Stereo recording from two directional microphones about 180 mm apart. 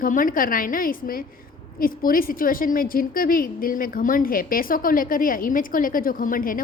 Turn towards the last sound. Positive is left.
turn(degrees=50)  # may be behind; listen again after turning